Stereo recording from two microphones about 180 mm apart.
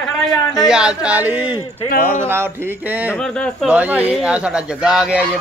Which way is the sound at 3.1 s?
5° left (ahead or behind).